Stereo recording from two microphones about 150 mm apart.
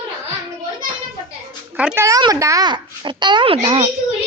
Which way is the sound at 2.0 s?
25° right (ahead or behind).